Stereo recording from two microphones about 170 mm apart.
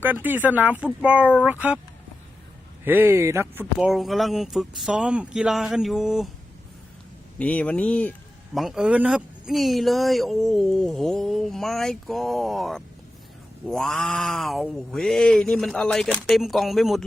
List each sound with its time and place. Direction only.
0.0 s speech: 10° right (ahead or behind)
2.8 s speech: 10° right (ahead or behind)
7.3 s speech: 10° left (ahead or behind)